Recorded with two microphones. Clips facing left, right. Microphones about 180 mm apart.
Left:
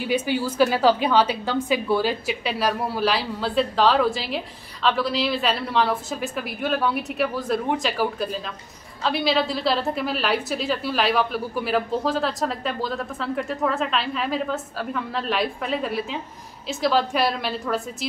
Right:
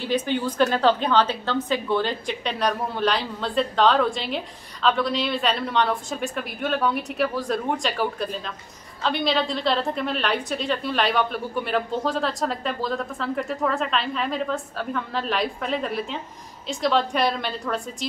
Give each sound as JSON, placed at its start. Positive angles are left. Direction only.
{"t": 0.0, "sound": "a woman's voice", "side_deg": 10}